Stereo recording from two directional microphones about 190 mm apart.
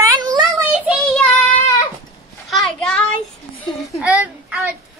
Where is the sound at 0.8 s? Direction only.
Centre (ahead or behind).